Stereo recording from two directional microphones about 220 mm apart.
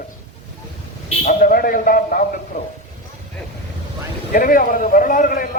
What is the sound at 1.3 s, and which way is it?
Speech, 40° left (ahead or behind).